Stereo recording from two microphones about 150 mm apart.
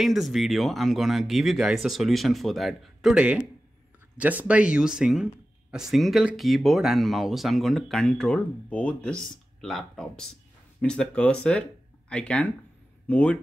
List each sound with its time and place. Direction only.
0.0 s speech: centre (ahead or behind)